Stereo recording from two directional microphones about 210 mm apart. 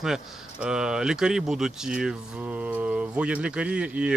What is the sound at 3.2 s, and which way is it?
Speech, 5° right (ahead or behind).